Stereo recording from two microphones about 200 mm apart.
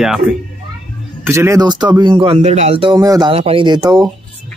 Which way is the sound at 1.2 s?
15° right (ahead or behind).